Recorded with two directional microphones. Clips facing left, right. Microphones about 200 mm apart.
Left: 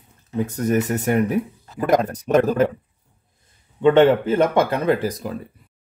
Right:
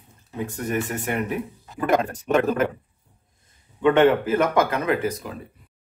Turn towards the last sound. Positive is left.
turn(degrees=35)  # may be behind; listen again after turning